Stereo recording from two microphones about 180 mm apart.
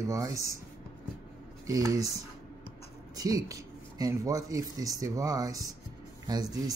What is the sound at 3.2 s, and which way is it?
Speech, 20° right (ahead or behind).